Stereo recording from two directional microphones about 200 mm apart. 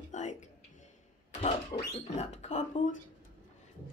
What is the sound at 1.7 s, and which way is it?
Speech, 20° left (ahead or behind).